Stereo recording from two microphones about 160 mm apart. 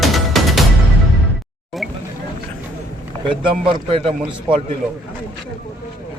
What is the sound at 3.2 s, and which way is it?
Speech, 30° right (ahead or behind).